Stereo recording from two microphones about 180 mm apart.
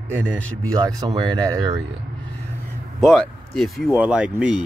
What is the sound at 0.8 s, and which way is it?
Speech, 20° right (ahead or behind).